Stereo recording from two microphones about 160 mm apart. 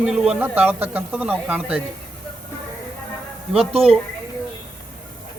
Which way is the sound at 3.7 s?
35° right (ahead or behind).